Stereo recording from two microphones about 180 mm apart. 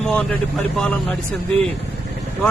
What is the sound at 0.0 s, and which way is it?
Speech, 5° left (ahead or behind).